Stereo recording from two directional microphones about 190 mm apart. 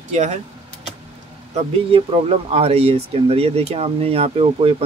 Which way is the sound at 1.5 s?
35° right (ahead or behind).